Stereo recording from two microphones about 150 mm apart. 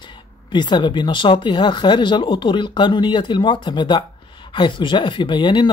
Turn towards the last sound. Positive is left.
turn(degrees=30)  # may be behind; listen again after turning